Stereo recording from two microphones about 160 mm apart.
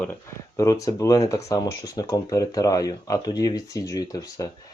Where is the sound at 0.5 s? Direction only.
20° left (ahead or behind).